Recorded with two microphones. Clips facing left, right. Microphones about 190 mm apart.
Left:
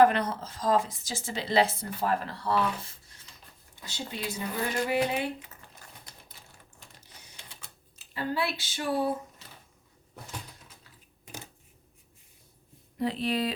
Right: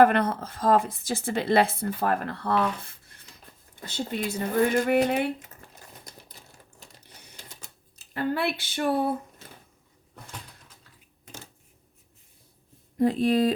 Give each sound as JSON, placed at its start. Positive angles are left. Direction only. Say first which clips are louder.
{"t": 0.0, "sound": "speech", "louder": "right 3 dB", "side_deg": -55}
{"t": 7.0, "sound": "a sound", "louder": "right 3 dB", "side_deg": -45}
{"t": 13.0, "sound": "speech", "louder": "right 7 dB", "side_deg": -45}